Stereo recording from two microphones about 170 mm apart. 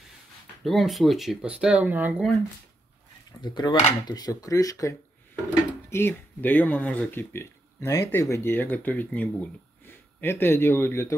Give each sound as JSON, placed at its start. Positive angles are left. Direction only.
{"t": 0.7, "sound": "speech", "side_deg": 0}
{"t": 3.3, "sound": "speech", "side_deg": 25}